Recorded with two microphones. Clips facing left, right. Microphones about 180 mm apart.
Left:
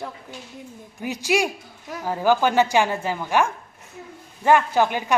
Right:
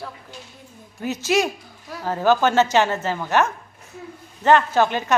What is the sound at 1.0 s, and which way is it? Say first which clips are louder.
A child's voice: right 2 dB; 15° left (ahead or behind).